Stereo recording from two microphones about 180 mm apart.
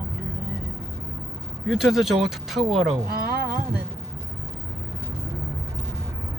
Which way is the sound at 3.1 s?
55° right (ahead or behind).